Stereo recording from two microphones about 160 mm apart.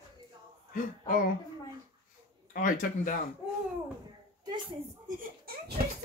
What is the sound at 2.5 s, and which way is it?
Speech, 55° left (ahead or behind).